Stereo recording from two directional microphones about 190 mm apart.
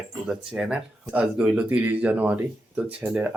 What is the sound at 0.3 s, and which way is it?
Speech, 5° right (ahead or behind).